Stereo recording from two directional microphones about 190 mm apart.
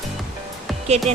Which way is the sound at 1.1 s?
35° right (ahead or behind).